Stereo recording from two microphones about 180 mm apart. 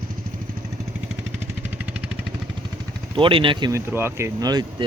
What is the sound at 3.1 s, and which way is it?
Speech, 30° right (ahead or behind).